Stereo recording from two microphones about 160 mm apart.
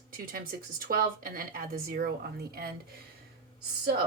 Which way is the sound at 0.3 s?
65° right (ahead or behind).